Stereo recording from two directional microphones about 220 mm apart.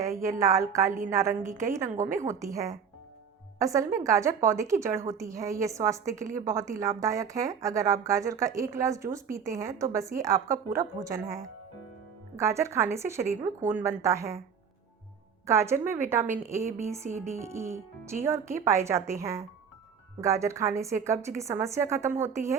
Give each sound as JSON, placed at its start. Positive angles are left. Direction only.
{"t": 0.0, "sound": "a woman's voice", "side_deg": -15}
{"t": 15.4, "sound": "a woman's voice", "side_deg": -10}
{"t": 17.0, "sound": "music", "side_deg": -35}
{"t": 17.2, "sound": "a woman's voice", "side_deg": -10}